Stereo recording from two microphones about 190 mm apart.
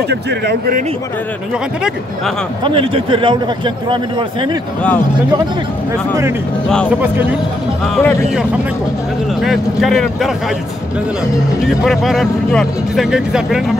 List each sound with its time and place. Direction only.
0.1 s speech: 60° right (ahead or behind)
2.6 s a man's voice: 30° right (ahead or behind)
7.8 s speech: centre (ahead or behind)
9.4 s speech: centre (ahead or behind)
11.6 s speech: centre (ahead or behind)